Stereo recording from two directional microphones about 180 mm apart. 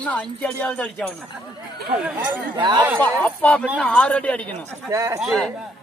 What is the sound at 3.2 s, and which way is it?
A man's voice, 10° left (ahead or behind).